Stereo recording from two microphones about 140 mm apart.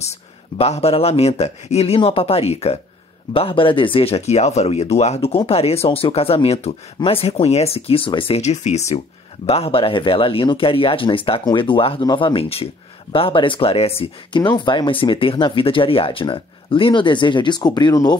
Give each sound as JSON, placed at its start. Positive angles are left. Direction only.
{"t": 0.6, "sound": "speech", "side_deg": 45}
{"t": 8.4, "sound": "speech", "side_deg": 55}